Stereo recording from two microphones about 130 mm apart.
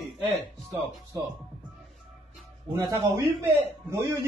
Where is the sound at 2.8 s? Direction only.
30° right (ahead or behind).